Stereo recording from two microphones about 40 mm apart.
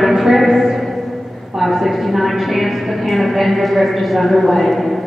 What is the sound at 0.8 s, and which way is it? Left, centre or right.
A woman's voice, centre.